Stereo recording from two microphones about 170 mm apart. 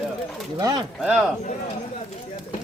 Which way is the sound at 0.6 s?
25° right (ahead or behind).